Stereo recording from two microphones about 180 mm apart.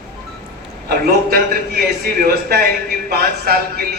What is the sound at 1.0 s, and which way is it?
A man's voice, 55° right (ahead or behind).